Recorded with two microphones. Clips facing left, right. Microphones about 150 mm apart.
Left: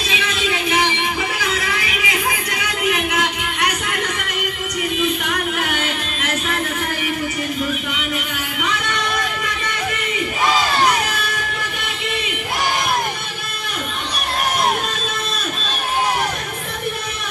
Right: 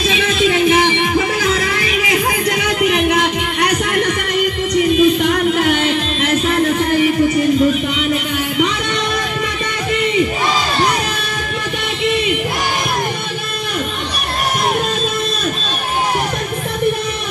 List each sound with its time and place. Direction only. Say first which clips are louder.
0.3 s music: right 9 dB; 35° right (ahead or behind)
4.9 s music: right 8 dB; 30° right (ahead or behind)